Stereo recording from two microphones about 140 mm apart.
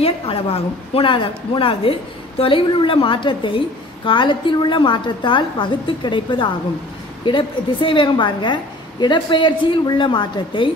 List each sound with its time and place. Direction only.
0.0 s a woman's voice: 45° left (ahead or behind)